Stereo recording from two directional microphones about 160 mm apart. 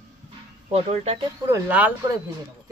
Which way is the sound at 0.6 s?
40° right (ahead or behind).